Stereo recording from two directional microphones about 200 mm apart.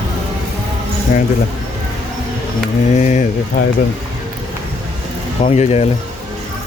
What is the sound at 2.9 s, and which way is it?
Speech, 35° left (ahead or behind).